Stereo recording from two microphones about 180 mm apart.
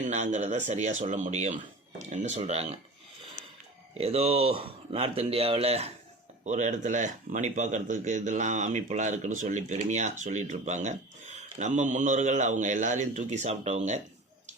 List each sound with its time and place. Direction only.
0.0 s a man's voice: 40° right (ahead or behind)
3.4 s a sound: 45° right (ahead or behind)
3.9 s a man's voice: 35° right (ahead or behind)